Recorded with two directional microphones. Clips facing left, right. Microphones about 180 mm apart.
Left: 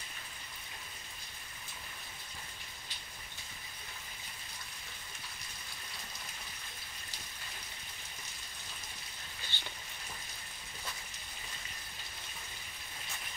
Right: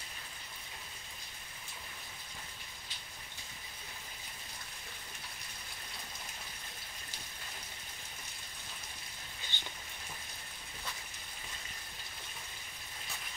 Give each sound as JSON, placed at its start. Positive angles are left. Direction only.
{"t": 9.5, "sound": "rain on surface", "side_deg": -15}